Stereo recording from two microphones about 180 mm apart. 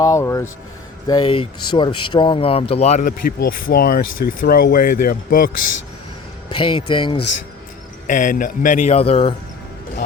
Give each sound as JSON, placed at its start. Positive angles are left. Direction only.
{"t": 0.0, "sound": "speech", "side_deg": 15}
{"t": 1.0, "sound": "speech", "side_deg": 25}
{"t": 3.1, "sound": "speech", "side_deg": 55}
{"t": 6.5, "sound": "speech", "side_deg": 25}
{"t": 8.0, "sound": "speech", "side_deg": 45}